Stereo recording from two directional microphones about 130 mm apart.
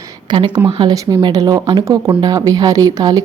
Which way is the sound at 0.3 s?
35° right (ahead or behind).